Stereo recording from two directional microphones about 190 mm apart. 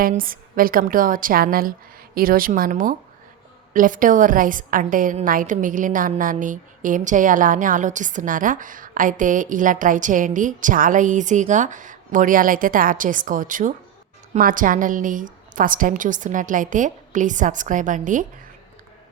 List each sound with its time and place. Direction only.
0.0 s a woman's voice: 50° right (ahead or behind)